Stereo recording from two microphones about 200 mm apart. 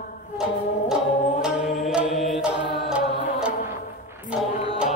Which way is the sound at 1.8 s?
Centre (ahead or behind).